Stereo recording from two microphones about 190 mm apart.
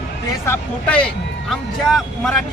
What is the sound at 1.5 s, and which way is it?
Speech, centre (ahead or behind).